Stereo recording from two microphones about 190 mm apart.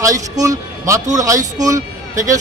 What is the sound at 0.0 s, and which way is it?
Speech, 15° right (ahead or behind).